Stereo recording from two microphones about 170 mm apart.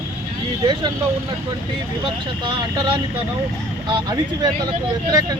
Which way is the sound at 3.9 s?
25° right (ahead or behind).